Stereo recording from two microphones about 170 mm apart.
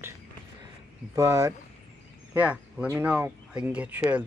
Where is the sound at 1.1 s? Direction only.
15° right (ahead or behind).